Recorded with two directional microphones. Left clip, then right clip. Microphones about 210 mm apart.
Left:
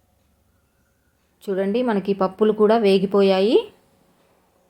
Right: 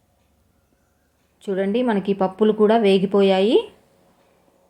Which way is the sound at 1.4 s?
5° right (ahead or behind).